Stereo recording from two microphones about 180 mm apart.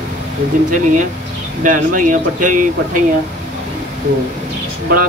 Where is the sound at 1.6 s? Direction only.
45° right (ahead or behind).